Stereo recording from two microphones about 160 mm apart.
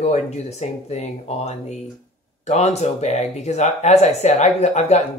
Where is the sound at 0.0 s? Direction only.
45° left (ahead or behind).